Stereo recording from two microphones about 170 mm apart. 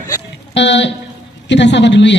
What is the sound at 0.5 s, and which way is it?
A woman's voice, 90° left.